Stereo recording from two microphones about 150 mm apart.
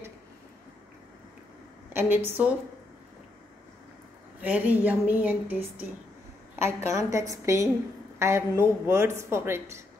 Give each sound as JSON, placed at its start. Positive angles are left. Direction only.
{"t": 2.0, "sound": "a woman's voice", "side_deg": -15}
{"t": 4.4, "sound": "a woman's voice", "side_deg": -10}
{"t": 6.6, "sound": "a woman's voice", "side_deg": -20}